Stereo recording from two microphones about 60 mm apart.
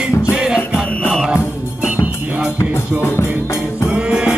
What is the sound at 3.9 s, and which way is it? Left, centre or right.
Music, centre.